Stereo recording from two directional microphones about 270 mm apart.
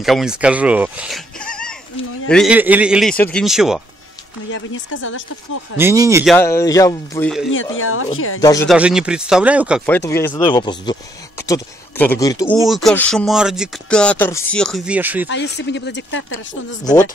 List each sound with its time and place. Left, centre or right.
0.0 s speech: centre
4.5 s speech: left
5.8 s speech: centre
6.2 s speech: centre
7.7 s speech: left
8.4 s speech: centre
8.6 s speech: centre
9.8 s speech: centre
12.6 s speech: centre
15.2 s speech: left
16.8 s speech: centre